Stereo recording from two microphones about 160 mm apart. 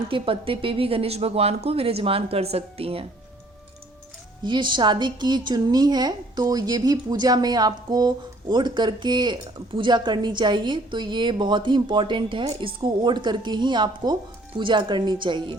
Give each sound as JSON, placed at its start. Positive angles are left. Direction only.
{"t": 0.1, "sound": "speech", "side_deg": -35}
{"t": 4.4, "sound": "speech", "side_deg": -30}